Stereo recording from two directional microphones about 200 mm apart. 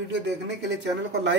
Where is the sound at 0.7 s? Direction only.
60° right (ahead or behind).